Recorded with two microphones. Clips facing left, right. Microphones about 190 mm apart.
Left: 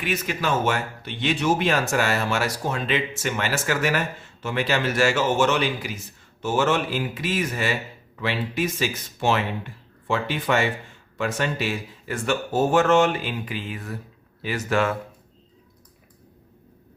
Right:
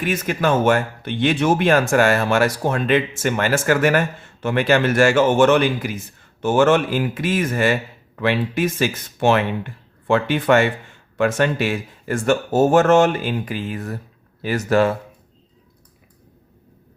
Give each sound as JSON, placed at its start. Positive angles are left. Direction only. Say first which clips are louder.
{"t": 0.0, "sound": "speech", "louder": "right 6 dB", "side_deg": -50}